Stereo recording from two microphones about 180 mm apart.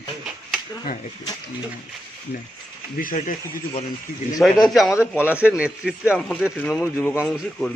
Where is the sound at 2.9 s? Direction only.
50° left (ahead or behind).